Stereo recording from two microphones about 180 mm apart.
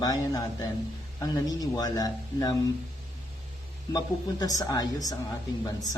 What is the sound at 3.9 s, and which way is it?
A man's voice, 20° left (ahead or behind).